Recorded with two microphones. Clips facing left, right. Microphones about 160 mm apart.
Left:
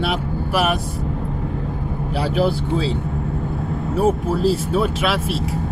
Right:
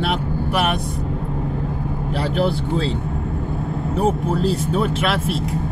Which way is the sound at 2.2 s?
5° left (ahead or behind).